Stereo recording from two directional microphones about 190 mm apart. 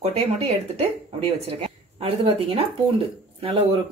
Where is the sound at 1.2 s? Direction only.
30° right (ahead or behind).